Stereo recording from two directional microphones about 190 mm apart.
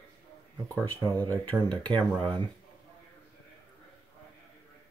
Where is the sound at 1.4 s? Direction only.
5° left (ahead or behind).